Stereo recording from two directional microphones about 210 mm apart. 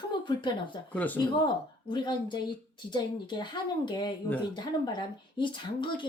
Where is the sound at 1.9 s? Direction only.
20° left (ahead or behind).